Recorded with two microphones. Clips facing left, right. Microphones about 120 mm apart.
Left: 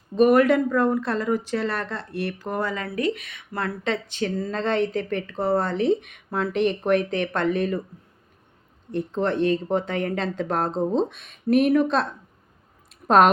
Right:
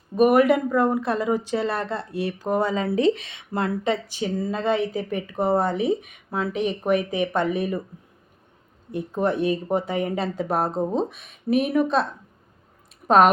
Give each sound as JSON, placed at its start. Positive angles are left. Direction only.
{"t": 0.2, "sound": "a woman's voice", "side_deg": -10}
{"t": 3.8, "sound": "a woman's voice", "side_deg": -10}
{"t": 8.9, "sound": "a woman's voice", "side_deg": -10}
{"t": 13.1, "sound": "speech", "side_deg": 0}